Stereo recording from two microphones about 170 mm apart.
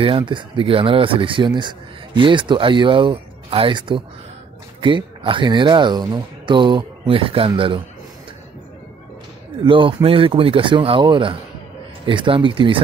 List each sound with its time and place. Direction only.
0.0 s speech: 30° right (ahead or behind)
9.7 s speech: 30° right (ahead or behind)